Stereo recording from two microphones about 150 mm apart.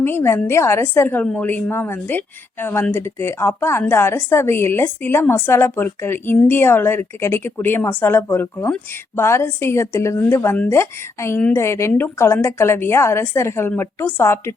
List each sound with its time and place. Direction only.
0.0 s speech: 15° left (ahead or behind)